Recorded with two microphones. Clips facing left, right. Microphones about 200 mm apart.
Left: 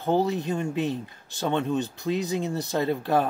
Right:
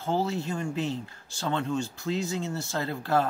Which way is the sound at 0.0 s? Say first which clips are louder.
Left 4 dB; 20° left (ahead or behind).